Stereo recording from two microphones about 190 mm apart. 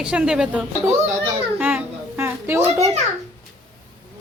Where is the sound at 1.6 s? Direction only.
10° right (ahead or behind).